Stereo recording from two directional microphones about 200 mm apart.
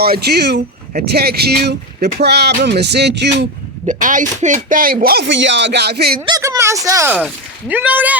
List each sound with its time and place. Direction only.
0.0 s speech: 50° right (ahead or behind)
3.8 s speech: 40° right (ahead or behind)
6.2 s speech: 20° right (ahead or behind)